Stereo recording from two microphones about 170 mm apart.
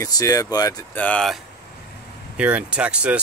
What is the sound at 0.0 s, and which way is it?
Speech, 20° left (ahead or behind).